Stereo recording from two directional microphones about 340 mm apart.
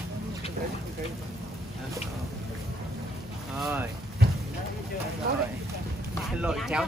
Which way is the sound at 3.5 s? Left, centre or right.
Centre.